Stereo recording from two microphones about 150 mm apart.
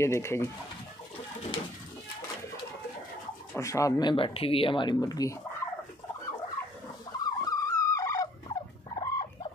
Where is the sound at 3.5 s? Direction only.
20° left (ahead or behind).